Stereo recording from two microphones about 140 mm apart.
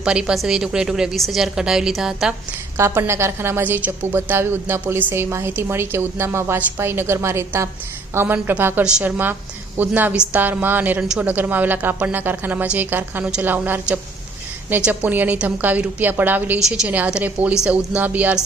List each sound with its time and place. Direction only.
0.0 s a woman's voice: 5° right (ahead or behind)
2.7 s a woman's voice: 15° right (ahead or behind)